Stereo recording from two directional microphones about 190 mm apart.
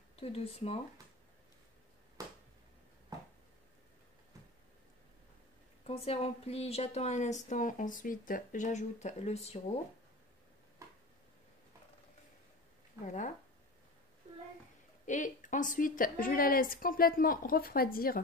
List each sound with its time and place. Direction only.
0.1 s speech: 30° left (ahead or behind)
2.2 s finger snapping: 20° right (ahead or behind)
5.9 s speech: 30° left (ahead or behind)
13.0 s speech: 40° left (ahead or behind)
15.0 s a woman's voice: 40° left (ahead or behind)